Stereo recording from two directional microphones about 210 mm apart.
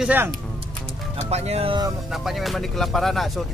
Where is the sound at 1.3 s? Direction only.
30° right (ahead or behind).